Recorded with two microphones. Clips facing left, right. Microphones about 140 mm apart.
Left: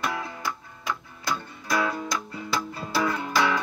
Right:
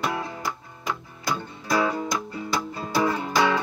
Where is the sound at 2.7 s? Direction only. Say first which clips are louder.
Right 4 dB; 25° right (ahead or behind).